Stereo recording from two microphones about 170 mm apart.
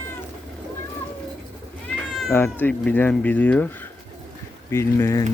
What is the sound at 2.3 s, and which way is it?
Speech, 10° left (ahead or behind).